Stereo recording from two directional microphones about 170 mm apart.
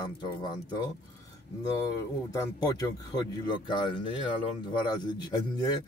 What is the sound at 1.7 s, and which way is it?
Speech, 20° left (ahead or behind).